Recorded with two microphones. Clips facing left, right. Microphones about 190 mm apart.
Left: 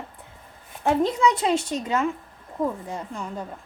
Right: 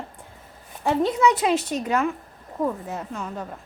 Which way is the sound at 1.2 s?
30° left (ahead or behind).